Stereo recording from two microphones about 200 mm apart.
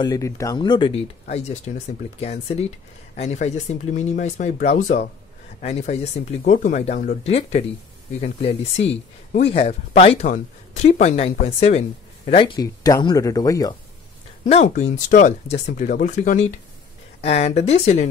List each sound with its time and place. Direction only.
0.0 s speech: 15° left (ahead or behind)
1.2 s speech: 35° left (ahead or behind); by 13.7 s 20° left (ahead or behind)
14.4 s speech: 35° left (ahead or behind)